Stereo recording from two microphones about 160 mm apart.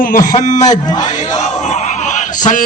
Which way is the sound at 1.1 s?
50° left (ahead or behind).